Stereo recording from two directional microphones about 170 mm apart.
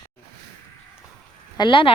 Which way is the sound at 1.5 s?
30° left (ahead or behind).